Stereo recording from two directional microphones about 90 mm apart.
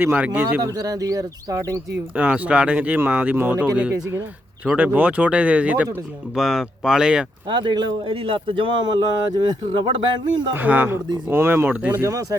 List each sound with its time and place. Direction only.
0.0 s speech: 25° right (ahead or behind)
0.6 s speech: 40° right (ahead or behind)
2.1 s speech: 15° right (ahead or behind)
6.3 s speech: 5° right (ahead or behind)
7.4 s speech: 55° right (ahead or behind)
8.0 s speech: 80° right; by 9.9 s 60° right (ahead or behind)
10.5 s speech: 20° right (ahead or behind)
12.0 s speech: 40° right (ahead or behind)